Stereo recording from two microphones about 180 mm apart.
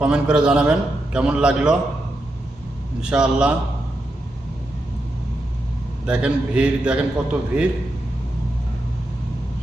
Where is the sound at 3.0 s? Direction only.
5° right (ahead or behind).